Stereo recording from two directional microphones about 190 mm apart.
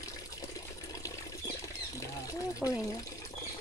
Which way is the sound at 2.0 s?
15° left (ahead or behind).